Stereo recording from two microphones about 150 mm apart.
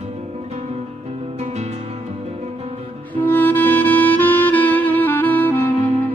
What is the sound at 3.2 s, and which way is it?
Music, 10° left (ahead or behind).